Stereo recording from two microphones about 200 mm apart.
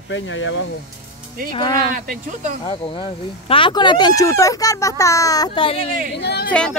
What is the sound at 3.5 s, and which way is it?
A child's voice, 25° left (ahead or behind).